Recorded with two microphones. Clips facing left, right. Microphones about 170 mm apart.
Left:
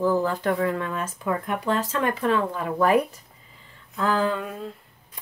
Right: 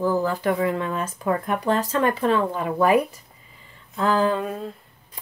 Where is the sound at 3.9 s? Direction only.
25° right (ahead or behind).